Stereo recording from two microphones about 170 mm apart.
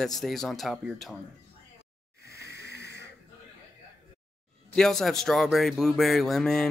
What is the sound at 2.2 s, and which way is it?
Hiss, 70° left (ahead or behind).